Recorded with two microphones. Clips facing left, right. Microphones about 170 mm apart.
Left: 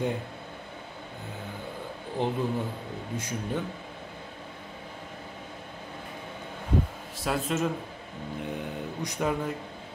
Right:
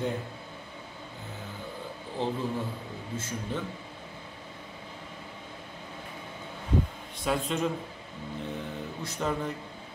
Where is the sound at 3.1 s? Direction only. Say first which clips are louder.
Left 2 dB; 15° left (ahead or behind).